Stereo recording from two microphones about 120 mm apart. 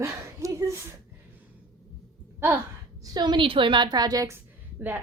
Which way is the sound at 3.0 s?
35° right (ahead or behind).